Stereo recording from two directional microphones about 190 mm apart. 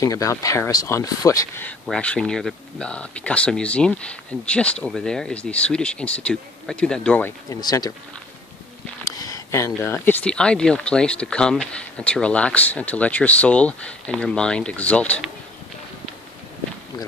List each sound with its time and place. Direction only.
0.0 s speech: 15° left (ahead or behind)
9.0 s a sound: 20° left (ahead or behind)
9.8 s speech: 10° left (ahead or behind)